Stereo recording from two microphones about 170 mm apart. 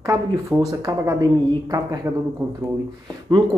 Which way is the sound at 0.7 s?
20° right (ahead or behind).